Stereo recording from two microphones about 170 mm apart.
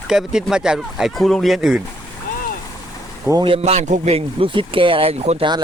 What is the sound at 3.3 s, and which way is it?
Speech, 25° right (ahead or behind).